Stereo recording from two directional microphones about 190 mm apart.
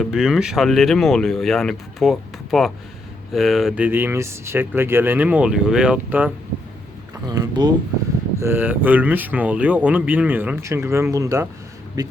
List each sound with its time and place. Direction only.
0.0 s speech: 5° right (ahead or behind)
7.3 s speech: 20° right (ahead or behind)